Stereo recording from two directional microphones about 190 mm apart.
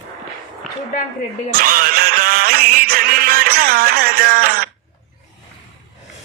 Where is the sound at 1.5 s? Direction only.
50° right (ahead or behind).